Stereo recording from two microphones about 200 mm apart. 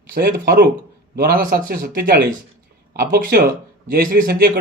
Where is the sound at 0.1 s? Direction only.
50° right (ahead or behind).